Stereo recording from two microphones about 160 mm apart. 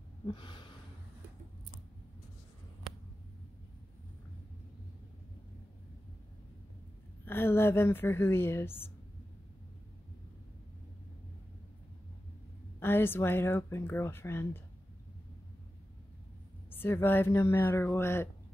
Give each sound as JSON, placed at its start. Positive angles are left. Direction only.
{"t": 0.3, "sound": "a sound", "side_deg": 30}
{"t": 7.2, "sound": "a woman's voice", "side_deg": 15}
{"t": 12.8, "sound": "a woman's voice", "side_deg": 15}
{"t": 16.7, "sound": "a woman's voice", "side_deg": 15}